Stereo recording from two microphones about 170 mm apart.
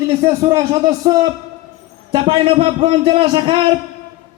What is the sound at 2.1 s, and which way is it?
A man's voice, 35° right (ahead or behind).